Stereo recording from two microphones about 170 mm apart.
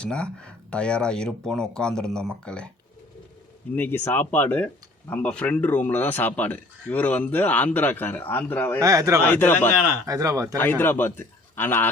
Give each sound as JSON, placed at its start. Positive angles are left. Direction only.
{"t": 0.0, "sound": "speech", "side_deg": 5}
{"t": 3.8, "sound": "speech", "side_deg": 10}
{"t": 8.8, "sound": "speech", "side_deg": -20}
{"t": 9.2, "sound": "speech", "side_deg": 10}
{"t": 10.1, "sound": "speech", "side_deg": -20}
{"t": 10.6, "sound": "speech", "side_deg": 10}